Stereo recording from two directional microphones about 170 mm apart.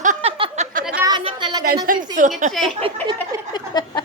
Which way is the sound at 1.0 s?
25° right (ahead or behind).